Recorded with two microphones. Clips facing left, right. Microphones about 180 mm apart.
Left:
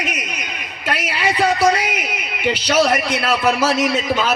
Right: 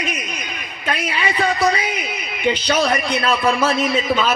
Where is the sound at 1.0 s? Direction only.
85° left.